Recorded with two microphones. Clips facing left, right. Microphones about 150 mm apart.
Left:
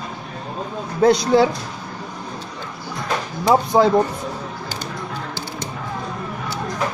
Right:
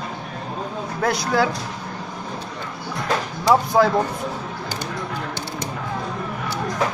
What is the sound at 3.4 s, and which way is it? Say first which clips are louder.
Speech: left 1 dB; 20° left (ahead or behind).